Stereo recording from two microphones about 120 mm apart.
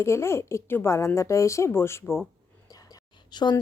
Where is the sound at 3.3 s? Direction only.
35° left (ahead or behind).